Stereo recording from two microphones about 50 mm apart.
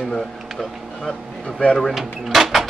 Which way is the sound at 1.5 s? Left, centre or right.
Centre.